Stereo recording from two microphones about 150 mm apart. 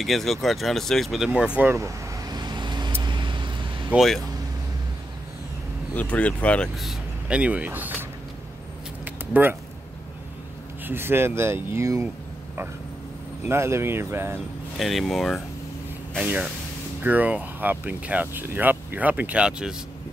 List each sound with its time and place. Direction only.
0.0 s speech: centre (ahead or behind)
1.6 s vehicle: 20° right (ahead or behind)
3.9 s speech: centre (ahead or behind)
5.9 s speech: 10° left (ahead or behind); by 7.9 s 10° right (ahead or behind)
9.0 s keys jangling: 10° right (ahead or behind)
10.9 s speech: 15° right (ahead or behind)
13.5 s speech: 15° right (ahead or behind)
14.8 s speech: centre (ahead or behind)